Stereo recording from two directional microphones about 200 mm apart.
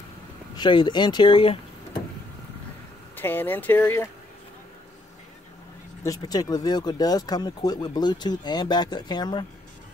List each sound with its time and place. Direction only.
0.6 s speech: 25° left (ahead or behind)
3.2 s speech: 10° left (ahead or behind)
6.0 s speech: 20° left (ahead or behind)